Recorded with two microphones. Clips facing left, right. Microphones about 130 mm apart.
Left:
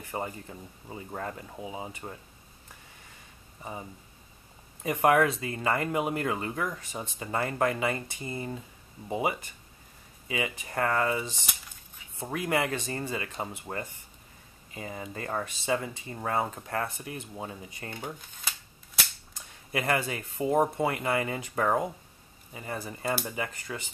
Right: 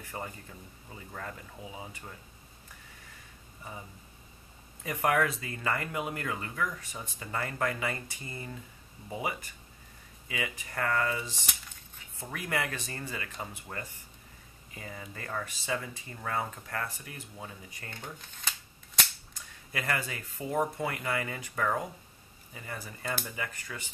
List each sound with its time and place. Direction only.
0.0 s speech: 25° left (ahead or behind)
4.8 s speech: 25° left (ahead or behind)
17.9 s speech: 10° left (ahead or behind)
19.7 s speech: 25° left (ahead or behind)